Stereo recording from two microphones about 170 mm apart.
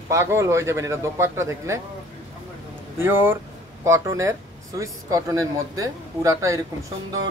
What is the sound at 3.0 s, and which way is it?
Speech, 15° right (ahead or behind).